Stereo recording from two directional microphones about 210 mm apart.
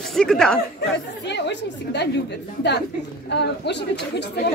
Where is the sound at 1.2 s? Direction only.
55° left (ahead or behind).